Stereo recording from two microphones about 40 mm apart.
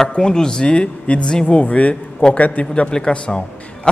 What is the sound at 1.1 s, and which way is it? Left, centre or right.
Speech, left.